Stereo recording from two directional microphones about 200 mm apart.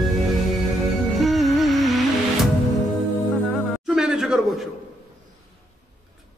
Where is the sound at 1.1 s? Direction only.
Centre (ahead or behind).